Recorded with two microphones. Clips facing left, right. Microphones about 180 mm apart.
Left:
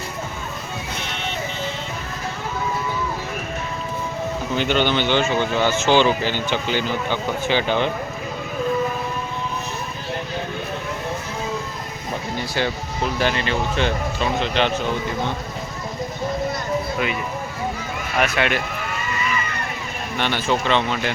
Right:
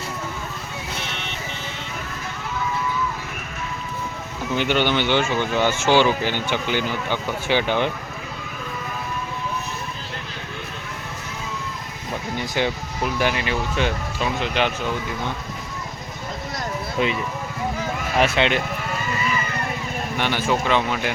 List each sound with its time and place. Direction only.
4.5 s speech: 15° right (ahead or behind)
5.9 s speech: 20° left (ahead or behind)
6.2 s speech: 15° right (ahead or behind)
13.1 s speech: 10° right (ahead or behind)
18.2 s speech: 25° right (ahead or behind)
20.1 s speech: 10° right (ahead or behind)